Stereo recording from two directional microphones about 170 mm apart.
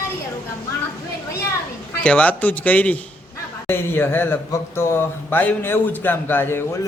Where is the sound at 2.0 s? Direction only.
5° left (ahead or behind).